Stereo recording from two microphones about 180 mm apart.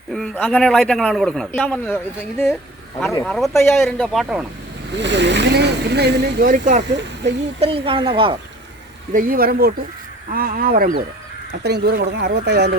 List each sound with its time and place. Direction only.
0.1 s a man's voice: 5° left (ahead or behind)
3.2 s a man's voice: centre (ahead or behind)
3.5 s speech: 15° left (ahead or behind)
3.8 s a man's voice: centre (ahead or behind)
4.9 s speech: 75° right (ahead or behind)
6.5 s speech: 45° right (ahead or behind)
7.6 s speech: 30° right (ahead or behind)
9.1 s speech: 50° right (ahead or behind)
11.6 s speech: 65° right (ahead or behind)